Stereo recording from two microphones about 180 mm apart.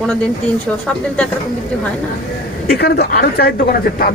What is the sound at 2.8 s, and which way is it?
A man's voice, 60° left (ahead or behind).